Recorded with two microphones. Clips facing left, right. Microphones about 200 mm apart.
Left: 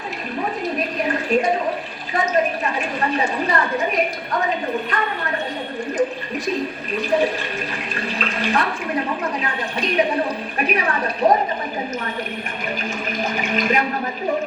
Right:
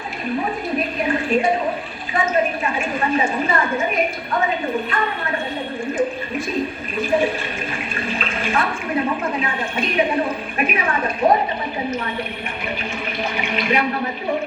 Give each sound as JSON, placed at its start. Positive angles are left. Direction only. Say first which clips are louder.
{"t": 1.0, "sound": "a sound", "louder": "even", "side_deg": 40}
{"t": 2.7, "sound": "speech", "louder": "right 1 dB", "side_deg": 35}
{"t": 5.9, "sound": "a sound", "louder": "even", "side_deg": 35}
{"t": 6.9, "sound": "speech", "louder": "even", "side_deg": 35}
{"t": 7.9, "sound": "water", "louder": "left 1 dB", "side_deg": 35}
{"t": 9.4, "sound": "speech", "louder": "right 1 dB", "side_deg": 35}
{"t": 13.3, "sound": "speech", "louder": "even", "side_deg": 45}